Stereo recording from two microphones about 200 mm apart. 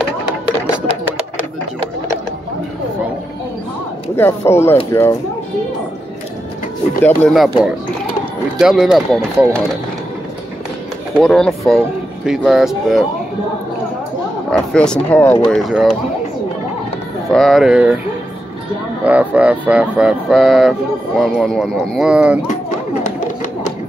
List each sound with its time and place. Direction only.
4.2 s speech: 10° left (ahead or behind)
7.0 s speech: 10° left (ahead or behind)
7.3 s speech: centre (ahead or behind)
11.1 s speech: centre (ahead or behind)
14.5 s speech: 5° left (ahead or behind)
17.3 s speech: centre (ahead or behind)
19.0 s speech: 5° right (ahead or behind)
23.0 s a sound: 35° left (ahead or behind)